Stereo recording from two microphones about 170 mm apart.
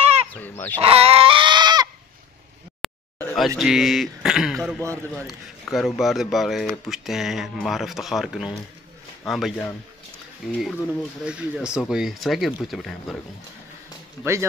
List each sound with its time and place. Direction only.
0.0 s fowl: 35° right (ahead or behind)
0.3 s fowl: 10° left (ahead or behind)
0.7 s goat: 35° right (ahead or behind)
2.8 s a sound: centre (ahead or behind)
3.3 s speech: centre (ahead or behind)